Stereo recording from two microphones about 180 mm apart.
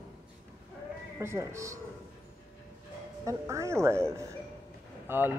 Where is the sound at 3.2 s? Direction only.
15° right (ahead or behind).